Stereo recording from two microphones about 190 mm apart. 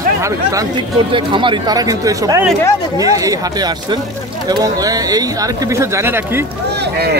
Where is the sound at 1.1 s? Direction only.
25° right (ahead or behind).